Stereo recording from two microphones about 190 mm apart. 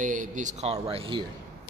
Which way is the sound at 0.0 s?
45° right (ahead or behind).